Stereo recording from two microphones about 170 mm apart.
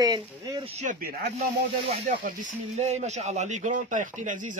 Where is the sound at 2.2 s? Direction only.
45° right (ahead or behind).